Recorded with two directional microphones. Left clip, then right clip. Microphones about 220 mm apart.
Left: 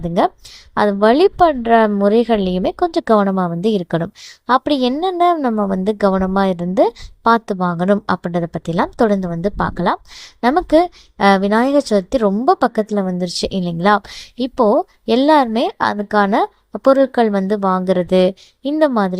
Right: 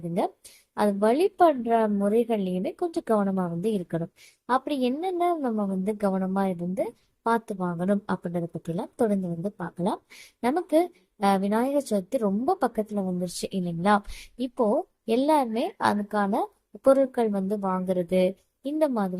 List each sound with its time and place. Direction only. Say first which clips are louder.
0.7 s a woman's voice: left 10 dB; 30° left (ahead or behind)